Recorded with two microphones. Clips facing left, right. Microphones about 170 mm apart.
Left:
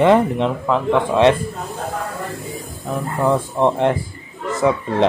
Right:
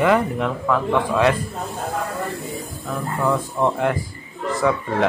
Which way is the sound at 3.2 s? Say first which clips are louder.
Left 4 dB; 30° left (ahead or behind).